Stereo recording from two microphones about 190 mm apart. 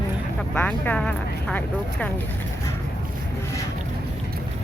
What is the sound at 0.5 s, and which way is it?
Speech, 10° left (ahead or behind).